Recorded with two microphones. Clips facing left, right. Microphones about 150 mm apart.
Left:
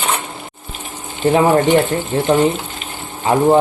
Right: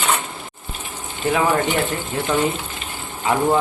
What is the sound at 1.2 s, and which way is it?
Speech, 45° left (ahead or behind).